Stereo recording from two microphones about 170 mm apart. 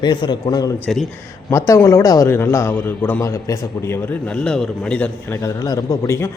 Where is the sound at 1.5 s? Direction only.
15° left (ahead or behind).